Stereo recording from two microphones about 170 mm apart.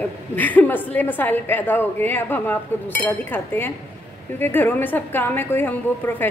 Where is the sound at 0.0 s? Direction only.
10° left (ahead or behind).